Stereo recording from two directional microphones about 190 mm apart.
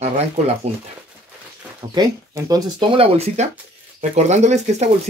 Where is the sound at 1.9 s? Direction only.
20° right (ahead or behind).